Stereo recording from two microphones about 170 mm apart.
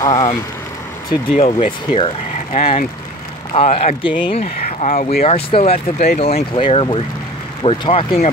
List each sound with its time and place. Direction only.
0.0 s speech: 20° left (ahead or behind)
1.3 s speech: 35° left (ahead or behind)